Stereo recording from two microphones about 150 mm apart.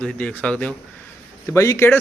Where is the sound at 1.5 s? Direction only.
20° left (ahead or behind).